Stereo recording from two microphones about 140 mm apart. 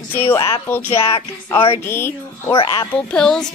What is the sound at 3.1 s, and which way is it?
Speech, 5° left (ahead or behind).